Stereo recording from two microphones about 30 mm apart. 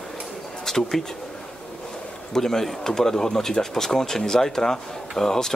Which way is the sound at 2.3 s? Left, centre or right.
Centre.